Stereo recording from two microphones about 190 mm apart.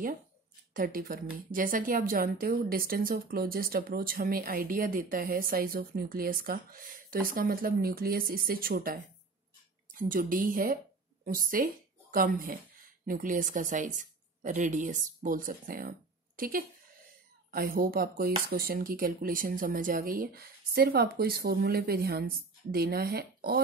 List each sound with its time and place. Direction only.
0.7 s a woman's voice: 45° right (ahead or behind)